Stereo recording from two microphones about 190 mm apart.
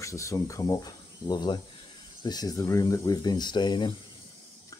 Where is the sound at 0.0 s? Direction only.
15° left (ahead or behind).